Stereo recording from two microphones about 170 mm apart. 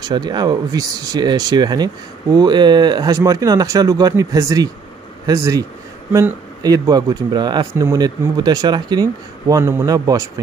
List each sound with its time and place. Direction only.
0.0 s speech: 25° right (ahead or behind)